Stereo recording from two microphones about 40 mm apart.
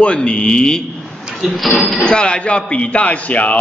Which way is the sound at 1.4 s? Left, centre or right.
Centre.